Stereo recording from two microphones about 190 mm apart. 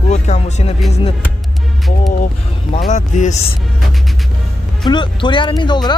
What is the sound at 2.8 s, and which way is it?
Speech, 40° left (ahead or behind).